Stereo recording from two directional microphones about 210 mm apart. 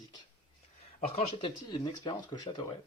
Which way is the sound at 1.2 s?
25° left (ahead or behind).